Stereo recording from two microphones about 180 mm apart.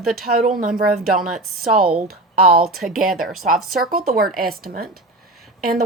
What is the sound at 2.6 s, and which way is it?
Speech, centre (ahead or behind).